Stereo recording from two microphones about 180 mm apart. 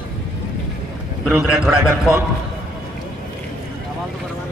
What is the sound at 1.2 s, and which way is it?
Speech, 5° right (ahead or behind).